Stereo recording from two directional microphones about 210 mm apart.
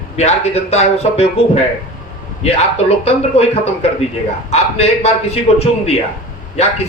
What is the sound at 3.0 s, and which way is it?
Speech, 30° left (ahead or behind).